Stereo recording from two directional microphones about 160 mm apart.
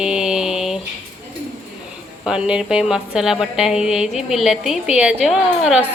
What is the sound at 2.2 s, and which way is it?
A woman's voice, 5° right (ahead or behind).